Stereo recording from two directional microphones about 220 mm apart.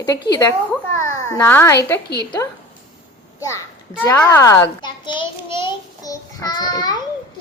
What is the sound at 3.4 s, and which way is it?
A child's voice, 10° left (ahead or behind).